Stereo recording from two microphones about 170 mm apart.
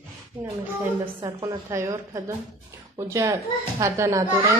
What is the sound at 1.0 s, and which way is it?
A woman's voice, 25° right (ahead or behind).